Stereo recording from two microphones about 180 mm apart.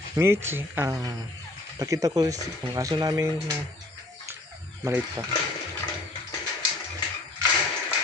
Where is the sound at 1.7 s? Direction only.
20° right (ahead or behind).